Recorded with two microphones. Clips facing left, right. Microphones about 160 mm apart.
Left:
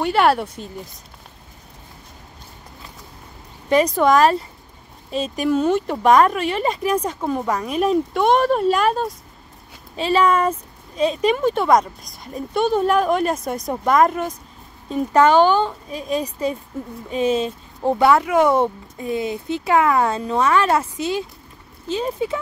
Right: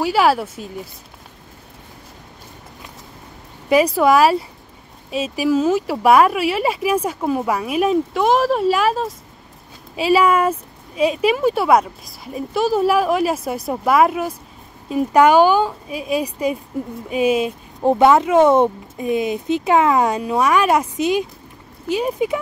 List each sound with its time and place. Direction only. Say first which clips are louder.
0.0 s speech: right 1 dB; 5° right (ahead or behind)
3.6 s speech: right 2 dB; 10° right (ahead or behind)